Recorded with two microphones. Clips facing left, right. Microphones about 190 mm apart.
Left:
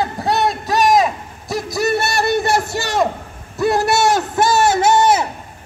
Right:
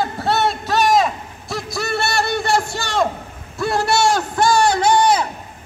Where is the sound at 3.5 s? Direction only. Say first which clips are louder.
Left 3 dB; 20° left (ahead or behind).